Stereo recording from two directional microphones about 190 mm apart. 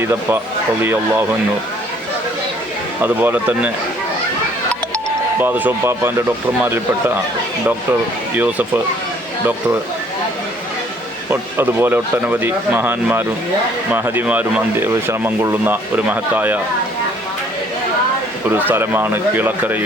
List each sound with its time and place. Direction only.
0.0 s speech: 10° right (ahead or behind)
3.0 s speech: 10° right (ahead or behind)
5.4 s speech: 10° right (ahead or behind)
8.4 s speech: 10° right (ahead or behind)
11.3 s speech: 10° right (ahead or behind)
18.5 s speech: 10° right (ahead or behind)